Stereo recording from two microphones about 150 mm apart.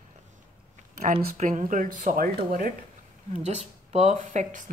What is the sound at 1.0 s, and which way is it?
Speech, 55° right (ahead or behind).